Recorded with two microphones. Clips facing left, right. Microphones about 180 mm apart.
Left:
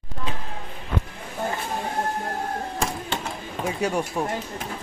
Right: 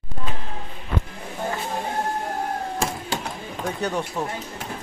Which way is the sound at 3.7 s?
10° left (ahead or behind).